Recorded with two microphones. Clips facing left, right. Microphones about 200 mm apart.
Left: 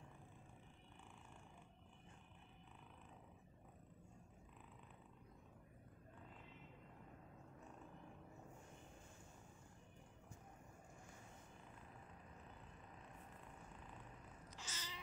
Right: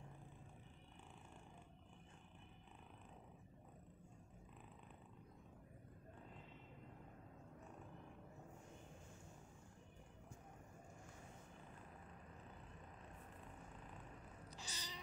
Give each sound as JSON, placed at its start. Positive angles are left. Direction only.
{"t": 14.5, "sound": "cat", "side_deg": -15}